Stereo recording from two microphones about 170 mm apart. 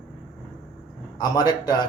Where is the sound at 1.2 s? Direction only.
25° left (ahead or behind).